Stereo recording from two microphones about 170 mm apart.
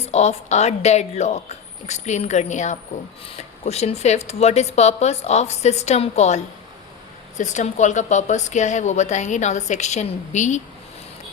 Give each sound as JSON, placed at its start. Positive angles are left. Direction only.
{"t": 0.0, "sound": "a woman's voice", "side_deg": 40}